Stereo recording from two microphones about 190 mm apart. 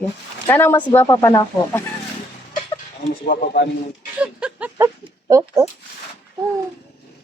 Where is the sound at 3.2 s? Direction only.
50° left (ahead or behind).